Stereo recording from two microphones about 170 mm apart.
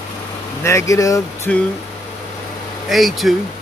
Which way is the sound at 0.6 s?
15° left (ahead or behind).